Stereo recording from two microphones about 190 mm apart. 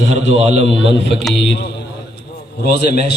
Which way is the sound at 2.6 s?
55° left (ahead or behind).